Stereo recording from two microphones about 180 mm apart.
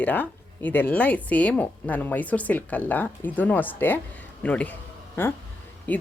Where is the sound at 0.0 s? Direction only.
10° left (ahead or behind).